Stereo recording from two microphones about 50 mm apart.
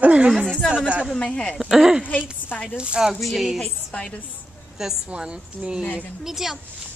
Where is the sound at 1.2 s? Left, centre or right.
Left.